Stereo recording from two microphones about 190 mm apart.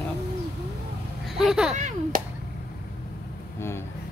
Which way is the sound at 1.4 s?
5° right (ahead or behind).